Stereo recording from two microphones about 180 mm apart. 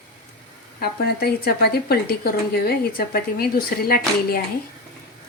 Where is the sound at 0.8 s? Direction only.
60° left (ahead or behind).